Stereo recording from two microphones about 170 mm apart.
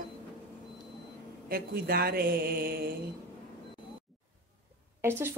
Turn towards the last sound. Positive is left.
turn(degrees=-15)  # may be behind; listen again after turning